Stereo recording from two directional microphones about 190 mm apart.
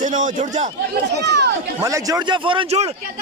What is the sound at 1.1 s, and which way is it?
Speech, 60° right (ahead or behind).